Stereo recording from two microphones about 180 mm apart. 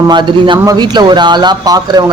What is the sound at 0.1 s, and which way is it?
A man's voice, 25° right (ahead or behind).